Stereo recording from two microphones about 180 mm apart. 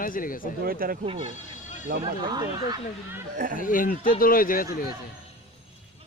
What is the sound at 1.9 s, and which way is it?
Speech, 60° right (ahead or behind).